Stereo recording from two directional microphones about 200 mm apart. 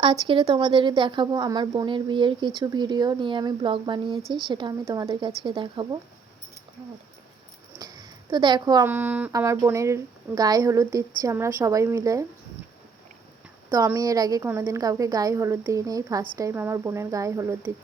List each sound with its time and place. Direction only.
0.0 s speech: 25° right (ahead or behind)
7.8 s a woman's voice: 20° right (ahead or behind)
13.7 s a woman's voice: 15° right (ahead or behind)